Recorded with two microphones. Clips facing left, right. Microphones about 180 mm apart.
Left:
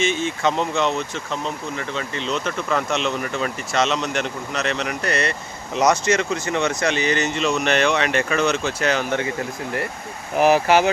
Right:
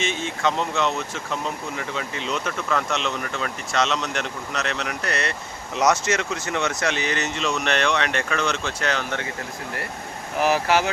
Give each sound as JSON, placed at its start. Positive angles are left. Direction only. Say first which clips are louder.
{"t": 0.0, "sound": "speech", "louder": "left 4 dB", "side_deg": 0}
{"t": 2.6, "sound": "speech", "louder": "left 3 dB", "side_deg": 5}
{"t": 10.4, "sound": "speech", "louder": "left 5 dB", "side_deg": 20}